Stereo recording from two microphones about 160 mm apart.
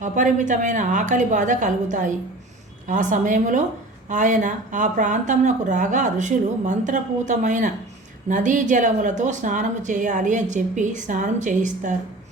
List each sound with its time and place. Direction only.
0.0 s a woman's voice: 50° right (ahead or behind)